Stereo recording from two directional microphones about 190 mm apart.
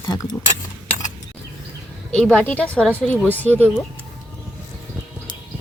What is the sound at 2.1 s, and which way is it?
Speech, 5° left (ahead or behind).